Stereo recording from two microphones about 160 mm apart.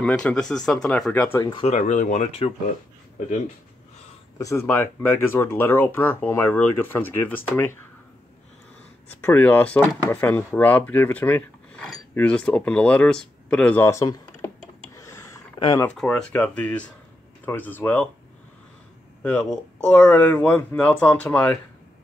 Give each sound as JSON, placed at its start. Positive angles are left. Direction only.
{"t": 0.0, "sound": "speech", "side_deg": 5}
{"t": 1.4, "sound": "speech", "side_deg": 35}
{"t": 1.8, "sound": "speech", "side_deg": 50}
{"t": 4.4, "sound": "speech", "side_deg": 20}
{"t": 9.2, "sound": "speech", "side_deg": 10}
{"t": 15.0, "sound": "a sound", "side_deg": 20}
{"t": 15.6, "sound": "speech", "side_deg": 35}
{"t": 15.9, "sound": "speech", "side_deg": 5}
{"t": 19.2, "sound": "speech", "side_deg": 10}